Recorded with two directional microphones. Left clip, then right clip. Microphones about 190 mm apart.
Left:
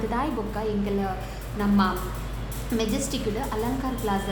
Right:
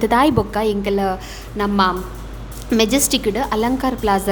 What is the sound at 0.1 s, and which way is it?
A woman's voice, 55° right (ahead or behind).